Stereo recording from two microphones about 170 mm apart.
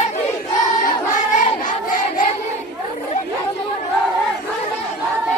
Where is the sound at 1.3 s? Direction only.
50° left (ahead or behind).